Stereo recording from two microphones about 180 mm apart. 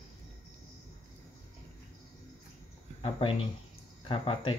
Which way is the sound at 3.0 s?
30° left (ahead or behind).